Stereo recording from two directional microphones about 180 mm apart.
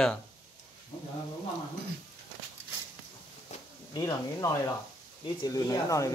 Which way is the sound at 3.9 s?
20° left (ahead or behind).